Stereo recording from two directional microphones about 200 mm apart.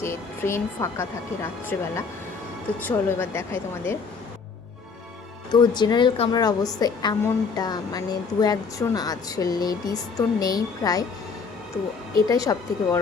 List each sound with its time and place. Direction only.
0.0 s speech: 15° left (ahead or behind)
5.5 s a woman's voice: 20° left (ahead or behind)
12.3 s speech: 15° left (ahead or behind)